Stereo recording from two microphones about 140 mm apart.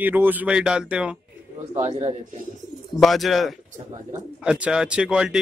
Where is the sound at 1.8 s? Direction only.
50° right (ahead or behind).